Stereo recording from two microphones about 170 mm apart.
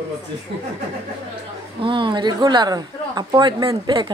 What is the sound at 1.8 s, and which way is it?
Speech, 30° right (ahead or behind).